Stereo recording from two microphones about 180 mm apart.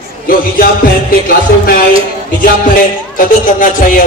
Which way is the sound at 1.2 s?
50° left (ahead or behind).